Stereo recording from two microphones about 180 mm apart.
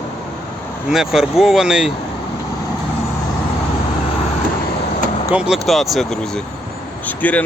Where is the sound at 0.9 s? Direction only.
Centre (ahead or behind).